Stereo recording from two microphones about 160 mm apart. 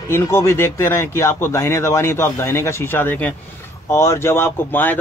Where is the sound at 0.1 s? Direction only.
15° left (ahead or behind).